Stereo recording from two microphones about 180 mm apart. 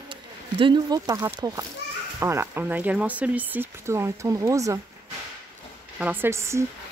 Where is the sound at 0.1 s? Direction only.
25° right (ahead or behind).